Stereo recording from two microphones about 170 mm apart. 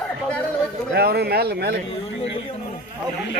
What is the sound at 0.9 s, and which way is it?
Speech, 70° right (ahead or behind).